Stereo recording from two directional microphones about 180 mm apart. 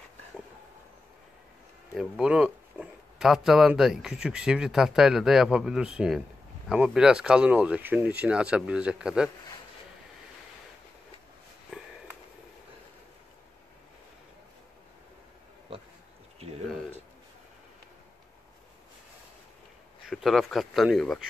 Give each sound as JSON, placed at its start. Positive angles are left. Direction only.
{"t": 2.0, "sound": "speech", "side_deg": -5}
{"t": 11.7, "sound": "sniff", "side_deg": -5}
{"t": 16.3, "sound": "a sound", "side_deg": -35}
{"t": 20.1, "sound": "speech", "side_deg": 0}